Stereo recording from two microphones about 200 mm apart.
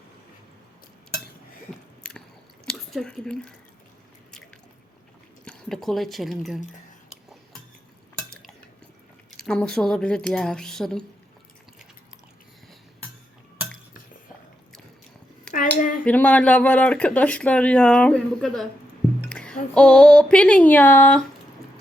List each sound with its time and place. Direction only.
2.6 s speech: centre (ahead or behind)
5.5 s speech: centre (ahead or behind)
7.1 s cutlery: centre (ahead or behind)
8.3 s a sound: centre (ahead or behind)
9.4 s speech: 5° left (ahead or behind)
15.5 s a sound: 45° left (ahead or behind)
16.0 s speech: 5° left (ahead or behind)
19.3 s music: 5° left (ahead or behind)
19.7 s speech: 5° left (ahead or behind)